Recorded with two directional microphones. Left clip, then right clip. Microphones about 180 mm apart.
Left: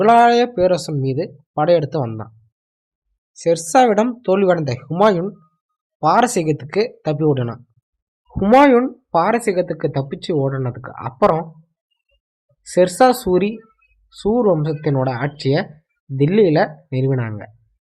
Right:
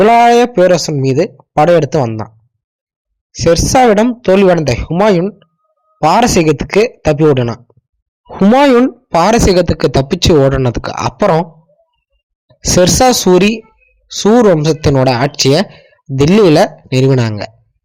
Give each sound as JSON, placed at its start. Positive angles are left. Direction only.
{"t": 0.0, "sound": "speech", "side_deg": -30}
{"t": 3.3, "sound": "speech", "side_deg": -25}
{"t": 8.5, "sound": "speech", "side_deg": -45}
{"t": 12.7, "sound": "speech", "side_deg": -45}
{"t": 14.6, "sound": "speech", "side_deg": -40}